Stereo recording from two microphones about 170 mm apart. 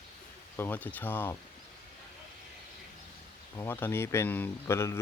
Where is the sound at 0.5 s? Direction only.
10° left (ahead or behind).